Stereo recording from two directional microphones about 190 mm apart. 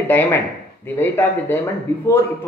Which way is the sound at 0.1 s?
10° left (ahead or behind).